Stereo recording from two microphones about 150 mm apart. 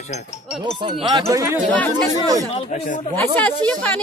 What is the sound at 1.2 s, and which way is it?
Speech, 20° right (ahead or behind).